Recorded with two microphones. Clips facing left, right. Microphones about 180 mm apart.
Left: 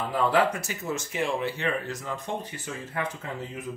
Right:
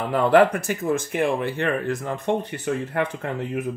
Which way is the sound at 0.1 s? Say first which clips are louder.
Right 8 dB; 60° right (ahead or behind).